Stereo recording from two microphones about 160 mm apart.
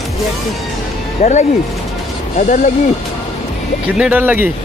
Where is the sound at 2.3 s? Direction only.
50° left (ahead or behind).